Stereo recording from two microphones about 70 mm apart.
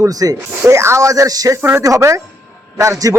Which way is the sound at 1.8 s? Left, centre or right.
Right.